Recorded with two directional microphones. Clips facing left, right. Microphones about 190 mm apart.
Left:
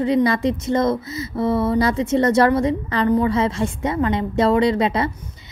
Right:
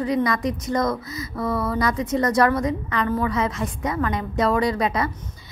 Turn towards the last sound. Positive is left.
turn(degrees=25)  # may be behind; listen again after turning